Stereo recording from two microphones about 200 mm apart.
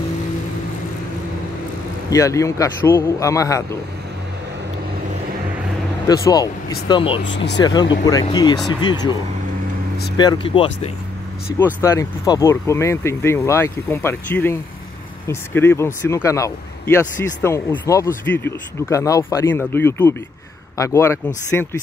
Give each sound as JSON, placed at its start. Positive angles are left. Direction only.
{"t": 2.0, "sound": "speech", "side_deg": 15}
{"t": 6.0, "sound": "speech", "side_deg": 15}
{"t": 7.2, "sound": "speech", "side_deg": 60}
{"t": 7.6, "sound": "speech", "side_deg": 20}
{"t": 10.1, "sound": "speech", "side_deg": 25}
{"t": 11.5, "sound": "speech", "side_deg": 15}